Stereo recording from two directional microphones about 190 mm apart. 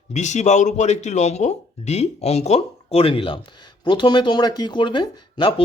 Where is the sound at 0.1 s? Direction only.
40° left (ahead or behind).